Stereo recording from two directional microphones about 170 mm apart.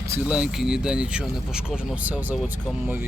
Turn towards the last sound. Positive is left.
turn(degrees=-10)  # may be behind; listen again after turning